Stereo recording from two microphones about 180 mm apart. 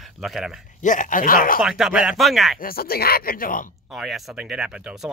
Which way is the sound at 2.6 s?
55° left (ahead or behind).